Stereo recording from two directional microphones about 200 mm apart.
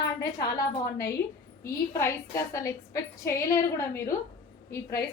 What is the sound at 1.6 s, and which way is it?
A woman's voice, 15° left (ahead or behind).